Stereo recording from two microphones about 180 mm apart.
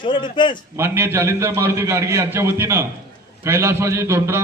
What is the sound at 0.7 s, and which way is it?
A man's voice, 15° right (ahead or behind).